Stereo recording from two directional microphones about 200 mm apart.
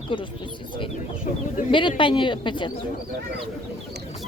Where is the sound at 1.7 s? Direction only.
25° left (ahead or behind).